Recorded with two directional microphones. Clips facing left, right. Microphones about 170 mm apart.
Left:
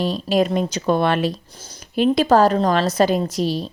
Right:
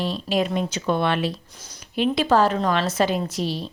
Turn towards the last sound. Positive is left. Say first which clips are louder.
# left 5 dB
turn(degrees=40)  # may be behind; listen again after turning